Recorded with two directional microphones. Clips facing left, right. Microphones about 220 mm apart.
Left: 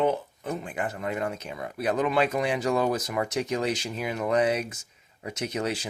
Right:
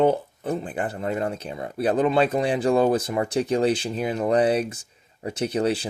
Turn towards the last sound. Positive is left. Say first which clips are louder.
# right 6 dB
turn(degrees=-30)  # may be behind; listen again after turning